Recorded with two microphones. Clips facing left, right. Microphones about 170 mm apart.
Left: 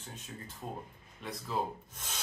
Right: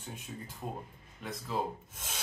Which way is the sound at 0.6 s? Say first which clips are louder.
Right 2 dB; 10° right (ahead or behind).